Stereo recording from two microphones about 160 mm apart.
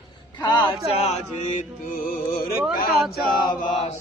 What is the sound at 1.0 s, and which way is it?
Mantra, 40° left (ahead or behind).